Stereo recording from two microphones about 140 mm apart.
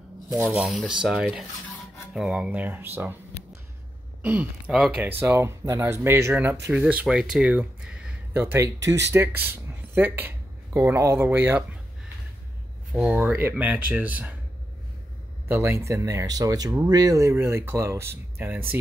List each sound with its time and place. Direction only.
0.3 s speech: 20° right (ahead or behind)
0.6 s speech: 5° right (ahead or behind)
4.2 s speech: 15° right (ahead or behind)
5.2 s speech: 15° right (ahead or behind)
12.9 s speech: 10° right (ahead or behind)
15.4 s speech: 20° right (ahead or behind)